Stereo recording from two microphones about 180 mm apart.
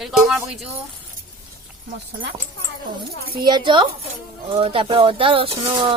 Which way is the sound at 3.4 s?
25° right (ahead or behind).